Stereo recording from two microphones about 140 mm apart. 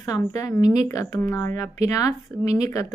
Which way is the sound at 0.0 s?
25° left (ahead or behind).